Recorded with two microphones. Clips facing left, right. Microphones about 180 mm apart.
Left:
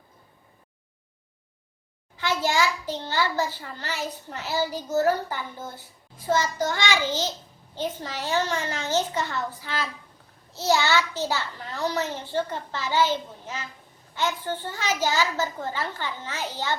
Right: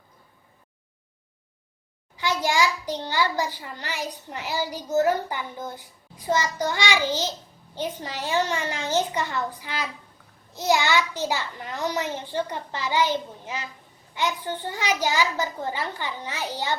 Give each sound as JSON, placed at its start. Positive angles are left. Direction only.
{"t": 2.1, "sound": "a child's voice", "side_deg": -15}